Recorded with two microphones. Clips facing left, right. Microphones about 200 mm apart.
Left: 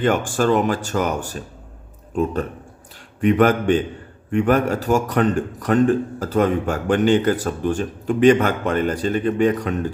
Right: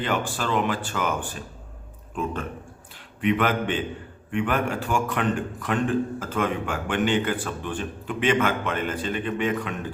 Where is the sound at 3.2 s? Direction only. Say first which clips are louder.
Left 7 dB; 45° left (ahead or behind).